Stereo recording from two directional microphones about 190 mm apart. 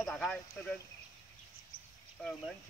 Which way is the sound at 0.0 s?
5° left (ahead or behind).